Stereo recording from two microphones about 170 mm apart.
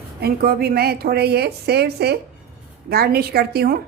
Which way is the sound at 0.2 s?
65° right (ahead or behind).